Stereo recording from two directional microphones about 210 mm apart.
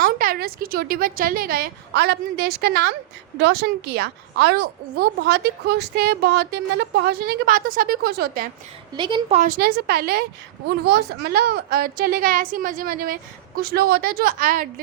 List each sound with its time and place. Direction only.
0.0 s a woman's voice: 45° right (ahead or behind)
9.0 s a woman's voice: 20° right (ahead or behind)
9.4 s a woman's voice: 45° right (ahead or behind)